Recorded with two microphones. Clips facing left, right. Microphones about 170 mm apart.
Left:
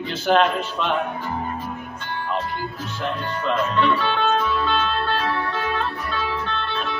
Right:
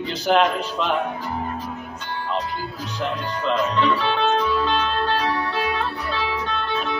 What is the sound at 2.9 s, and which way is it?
Music, 15° right (ahead or behind).